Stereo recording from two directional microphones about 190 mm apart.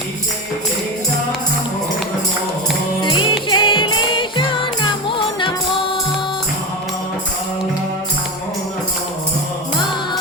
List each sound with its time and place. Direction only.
3.0 s music: 25° left (ahead or behind)